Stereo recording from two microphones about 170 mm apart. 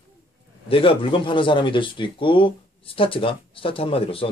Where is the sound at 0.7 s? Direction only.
30° left (ahead or behind).